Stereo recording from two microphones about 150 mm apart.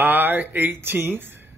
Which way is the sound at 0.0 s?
10° right (ahead or behind).